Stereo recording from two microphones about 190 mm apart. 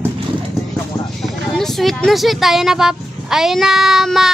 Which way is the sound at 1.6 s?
Centre (ahead or behind).